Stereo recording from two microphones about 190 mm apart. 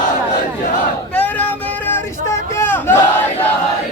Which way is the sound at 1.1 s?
10° left (ahead or behind).